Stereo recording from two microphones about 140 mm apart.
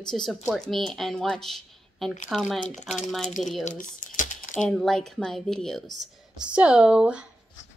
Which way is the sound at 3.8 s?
70° left (ahead or behind).